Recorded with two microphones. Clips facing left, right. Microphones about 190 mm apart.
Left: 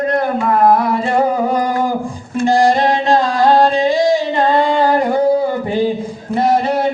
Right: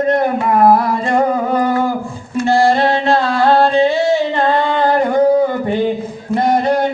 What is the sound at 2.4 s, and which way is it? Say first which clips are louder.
Music: even; 15° left (ahead or behind).